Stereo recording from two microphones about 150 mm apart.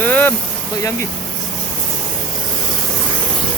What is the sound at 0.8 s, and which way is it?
Speech, 20° left (ahead or behind).